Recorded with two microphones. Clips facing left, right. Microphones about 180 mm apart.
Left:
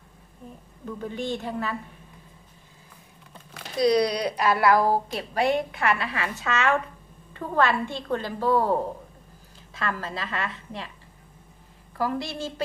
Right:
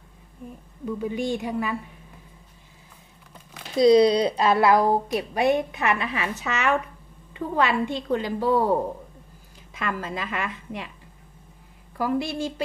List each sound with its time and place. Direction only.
0.9 s a woman's voice: 10° right (ahead or behind)
3.7 s a woman's voice: 25° right (ahead or behind)
9.8 s a woman's voice: 15° right (ahead or behind)
12.0 s a woman's voice: 15° right (ahead or behind)